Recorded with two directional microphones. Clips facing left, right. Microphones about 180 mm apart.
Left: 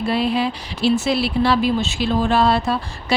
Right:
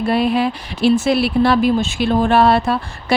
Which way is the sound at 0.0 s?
55° right (ahead or behind).